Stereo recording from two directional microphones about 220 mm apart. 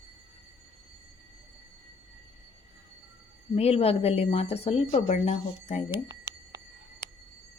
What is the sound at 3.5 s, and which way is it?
A woman's voice, 25° left (ahead or behind).